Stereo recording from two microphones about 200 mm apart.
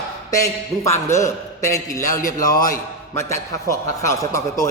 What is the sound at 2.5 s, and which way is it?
Speech, 45° left (ahead or behind).